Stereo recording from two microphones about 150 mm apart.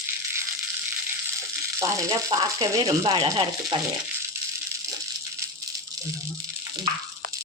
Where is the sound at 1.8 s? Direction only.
20° right (ahead or behind).